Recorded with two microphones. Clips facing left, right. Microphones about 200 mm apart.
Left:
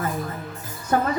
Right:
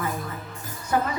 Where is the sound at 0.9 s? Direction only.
50° left (ahead or behind).